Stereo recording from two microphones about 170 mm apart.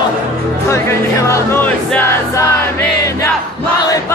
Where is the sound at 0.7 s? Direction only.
15° left (ahead or behind).